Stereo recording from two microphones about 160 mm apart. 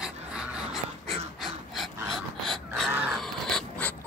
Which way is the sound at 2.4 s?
Centre (ahead or behind).